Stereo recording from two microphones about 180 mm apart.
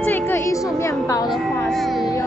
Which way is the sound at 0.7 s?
15° left (ahead or behind).